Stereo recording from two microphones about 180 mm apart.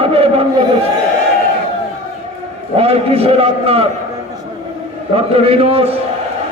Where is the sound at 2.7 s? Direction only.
30° right (ahead or behind).